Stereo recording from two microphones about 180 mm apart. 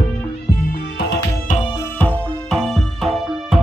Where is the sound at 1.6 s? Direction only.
25° left (ahead or behind).